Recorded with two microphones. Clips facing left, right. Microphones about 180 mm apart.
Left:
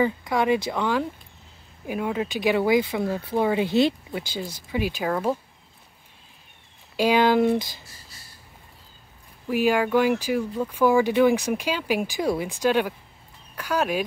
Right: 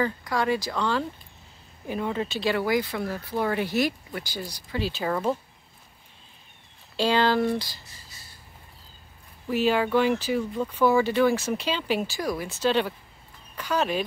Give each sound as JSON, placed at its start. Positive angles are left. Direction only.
{"t": 0.2, "sound": "speech", "side_deg": 20}
{"t": 7.0, "sound": "speech", "side_deg": 15}
{"t": 9.5, "sound": "speech", "side_deg": 10}
{"t": 12.2, "sound": "speech", "side_deg": 20}